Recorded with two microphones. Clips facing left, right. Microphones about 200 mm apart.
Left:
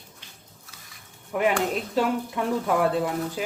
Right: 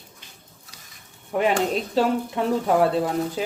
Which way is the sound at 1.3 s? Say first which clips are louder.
Right 2 dB; 30° right (ahead or behind).